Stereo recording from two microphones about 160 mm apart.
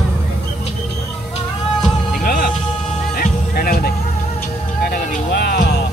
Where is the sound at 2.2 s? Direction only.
65° left (ahead or behind).